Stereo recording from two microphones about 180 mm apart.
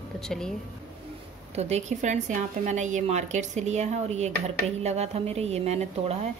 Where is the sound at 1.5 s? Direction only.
35° right (ahead or behind).